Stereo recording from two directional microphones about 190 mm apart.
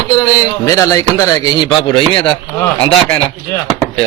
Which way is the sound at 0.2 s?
15° left (ahead or behind).